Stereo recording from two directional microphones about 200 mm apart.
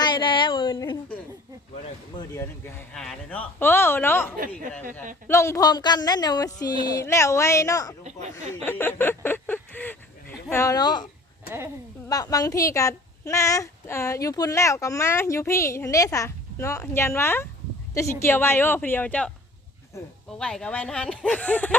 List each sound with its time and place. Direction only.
0.0 s a sound: 25° left (ahead or behind)
2.1 s a woman's voice: 15° left (ahead or behind)
8.0 s speech: 35° right (ahead or behind)
8.6 s a sound: 10° left (ahead or behind)
12.0 s a woman's voice: 20° left (ahead or behind)
20.4 s speech: 5° left (ahead or behind)